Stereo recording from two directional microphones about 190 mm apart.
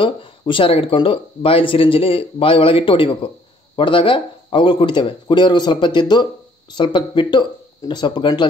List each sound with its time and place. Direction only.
0.0 s speech: 25° left (ahead or behind)